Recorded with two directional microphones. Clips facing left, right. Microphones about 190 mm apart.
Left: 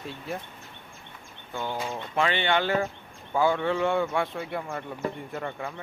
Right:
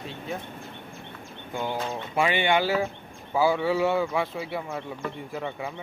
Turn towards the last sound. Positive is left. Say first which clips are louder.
# right 1 dB
turn(degrees=-5)  # may be behind; listen again after turning